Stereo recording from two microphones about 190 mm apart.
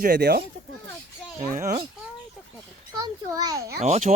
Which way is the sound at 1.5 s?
45° right (ahead or behind).